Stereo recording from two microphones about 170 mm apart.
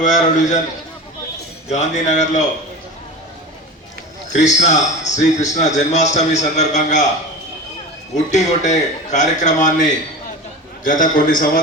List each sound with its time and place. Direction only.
0.0 s a man's voice: 45° left (ahead or behind)
1.7 s a man's voice: 45° left (ahead or behind)
4.3 s a man's voice: 45° left (ahead or behind)
8.1 s a man's voice: 45° left (ahead or behind)
10.8 s a man's voice: 55° left (ahead or behind)